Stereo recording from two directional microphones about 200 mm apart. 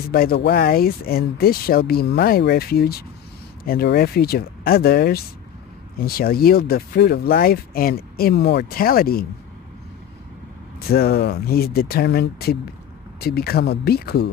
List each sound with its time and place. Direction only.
0.1 s speech: 50° left (ahead or behind)
10.9 s speech: 50° left (ahead or behind)